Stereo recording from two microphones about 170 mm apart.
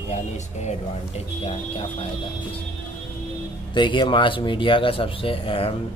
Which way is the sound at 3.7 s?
25° left (ahead or behind).